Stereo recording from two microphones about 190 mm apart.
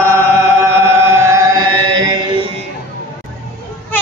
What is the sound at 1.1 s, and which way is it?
Chant, 15° right (ahead or behind).